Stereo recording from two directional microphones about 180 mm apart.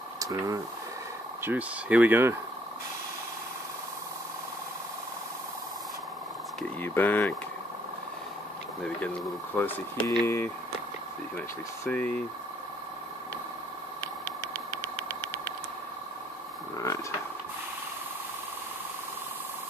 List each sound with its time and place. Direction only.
0.2 s speech: 20° right (ahead or behind)
6.8 s speech: 10° left (ahead or behind)
9.6 s speech: 10° left (ahead or behind)
11.8 s speech: 10° left (ahead or behind)
16.7 s a sound: 20° left (ahead or behind)